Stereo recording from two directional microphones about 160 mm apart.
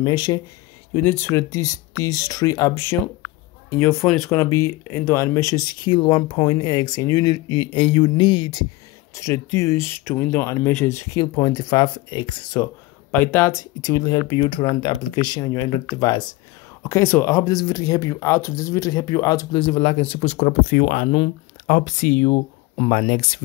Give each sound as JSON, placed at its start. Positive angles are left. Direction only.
{"t": 0.0, "sound": "speech", "side_deg": 25}
{"t": 1.0, "sound": "speech", "side_deg": 15}
{"t": 4.0, "sound": "speech", "side_deg": 0}
{"t": 4.3, "sound": "speech", "side_deg": 15}
{"t": 9.1, "sound": "speech", "side_deg": 15}
{"t": 13.1, "sound": "speech", "side_deg": 10}
{"t": 20.7, "sound": "speech", "side_deg": 65}
{"t": 21.6, "sound": "speech", "side_deg": 55}